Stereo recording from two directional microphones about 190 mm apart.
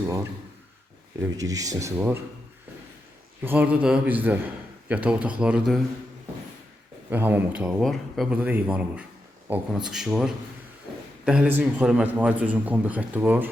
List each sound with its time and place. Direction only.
1.2 s a man's voice: 20° right (ahead or behind)
3.4 s a man's voice: 10° right (ahead or behind)
7.1 s a man's voice: 10° right (ahead or behind)